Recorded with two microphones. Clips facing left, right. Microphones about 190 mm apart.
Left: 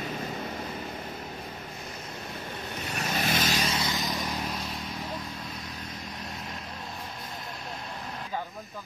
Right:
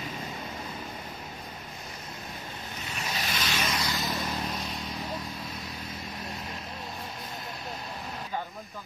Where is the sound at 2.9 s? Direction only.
50° left (ahead or behind).